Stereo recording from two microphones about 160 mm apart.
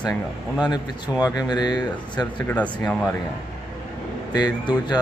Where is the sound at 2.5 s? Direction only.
10° left (ahead or behind).